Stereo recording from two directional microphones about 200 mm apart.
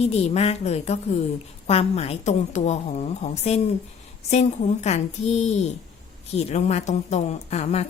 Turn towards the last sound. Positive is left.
turn(degrees=30)  # may be behind; listen again after turning